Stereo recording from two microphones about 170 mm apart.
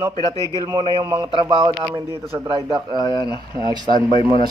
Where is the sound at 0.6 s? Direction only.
25° right (ahead or behind).